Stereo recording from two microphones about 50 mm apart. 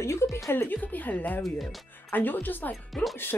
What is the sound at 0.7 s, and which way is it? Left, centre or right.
Speech, left.